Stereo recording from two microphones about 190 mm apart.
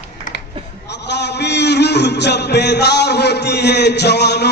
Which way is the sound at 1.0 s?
65° left (ahead or behind).